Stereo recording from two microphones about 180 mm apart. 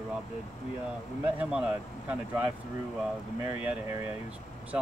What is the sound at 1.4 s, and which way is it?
Speech, 5° right (ahead or behind).